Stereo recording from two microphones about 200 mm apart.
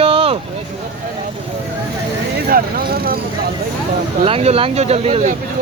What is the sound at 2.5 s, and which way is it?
Speech, 45° right (ahead or behind).